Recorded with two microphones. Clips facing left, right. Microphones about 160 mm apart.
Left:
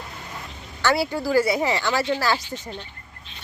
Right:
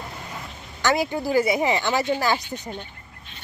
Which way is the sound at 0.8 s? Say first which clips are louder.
Even; 15° right (ahead or behind).